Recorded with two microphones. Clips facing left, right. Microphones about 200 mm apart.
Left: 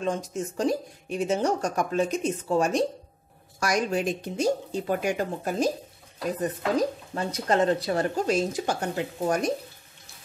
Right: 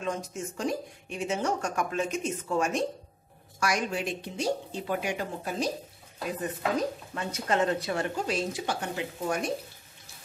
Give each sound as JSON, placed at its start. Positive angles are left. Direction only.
{"t": 0.0, "sound": "speech", "side_deg": 35}
{"t": 6.8, "sound": "speech", "side_deg": 35}